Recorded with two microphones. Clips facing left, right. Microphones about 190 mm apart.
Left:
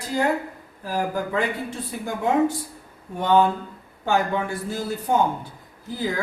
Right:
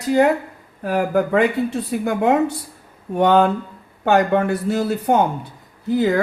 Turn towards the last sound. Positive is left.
turn(degrees=-70)  # may be behind; listen again after turning